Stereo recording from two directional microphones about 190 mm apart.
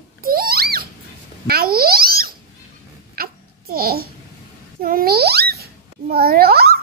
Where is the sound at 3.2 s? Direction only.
50° right (ahead or behind).